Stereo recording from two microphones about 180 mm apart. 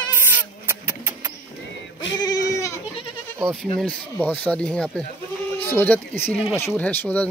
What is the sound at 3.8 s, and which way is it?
Speech, 10° left (ahead or behind).